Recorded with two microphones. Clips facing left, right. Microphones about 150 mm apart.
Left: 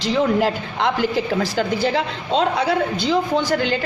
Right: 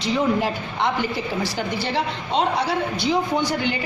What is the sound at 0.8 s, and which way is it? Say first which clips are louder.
Speech: left 4 dB; 90° left.